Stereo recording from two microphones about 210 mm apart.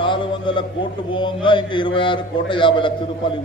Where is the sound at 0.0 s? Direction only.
25° left (ahead or behind).